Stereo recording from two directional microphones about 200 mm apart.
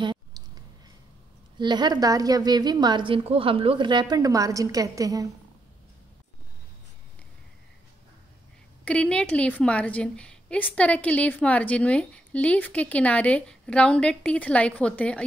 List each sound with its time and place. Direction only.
1.6 s a woman's voice: 20° right (ahead or behind)
8.8 s a woman's voice: 5° left (ahead or behind)